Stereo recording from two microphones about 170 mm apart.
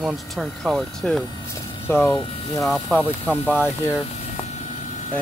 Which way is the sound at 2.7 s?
5° left (ahead or behind).